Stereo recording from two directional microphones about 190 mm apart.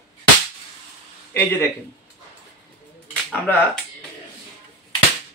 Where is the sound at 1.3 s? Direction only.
10° left (ahead or behind).